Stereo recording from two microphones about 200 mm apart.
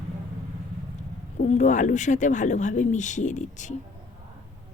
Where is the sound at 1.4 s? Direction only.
35° left (ahead or behind).